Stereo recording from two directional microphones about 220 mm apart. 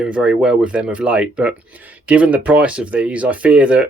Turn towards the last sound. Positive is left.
turn(degrees=-5)  # may be behind; listen again after turning